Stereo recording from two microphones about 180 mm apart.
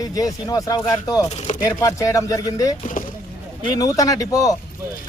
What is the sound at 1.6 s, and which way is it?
Speech, 15° left (ahead or behind).